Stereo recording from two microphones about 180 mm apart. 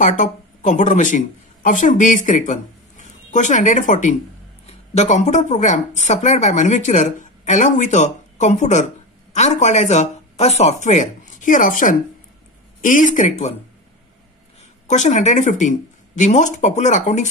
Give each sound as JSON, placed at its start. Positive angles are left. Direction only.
{"t": 0.0, "sound": "speech", "side_deg": 45}
{"t": 14.9, "sound": "speech", "side_deg": 40}